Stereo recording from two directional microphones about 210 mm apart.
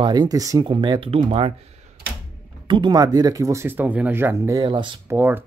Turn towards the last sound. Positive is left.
turn(degrees=-10)  # may be behind; listen again after turning